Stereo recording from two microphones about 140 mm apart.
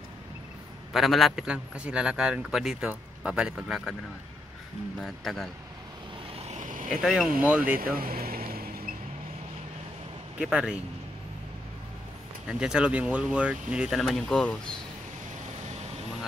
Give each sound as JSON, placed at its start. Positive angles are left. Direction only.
{"t": 0.9, "sound": "speech", "side_deg": 0}
{"t": 4.9, "sound": "speech", "side_deg": 0}
{"t": 6.3, "sound": "vehicle", "side_deg": -50}
{"t": 6.9, "sound": "speech", "side_deg": -5}
{"t": 7.8, "sound": "vehicle", "side_deg": -90}
{"t": 10.4, "sound": "speech", "side_deg": -5}
{"t": 12.4, "sound": "speech", "side_deg": -5}